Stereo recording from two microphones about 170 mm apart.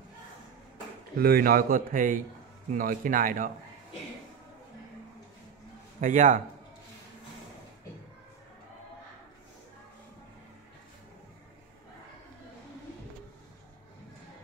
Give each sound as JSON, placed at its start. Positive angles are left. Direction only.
{"t": 1.1, "sound": "speech", "side_deg": -60}
{"t": 5.9, "sound": "speech", "side_deg": -50}